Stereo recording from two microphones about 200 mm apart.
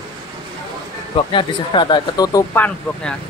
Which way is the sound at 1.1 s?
25° left (ahead or behind).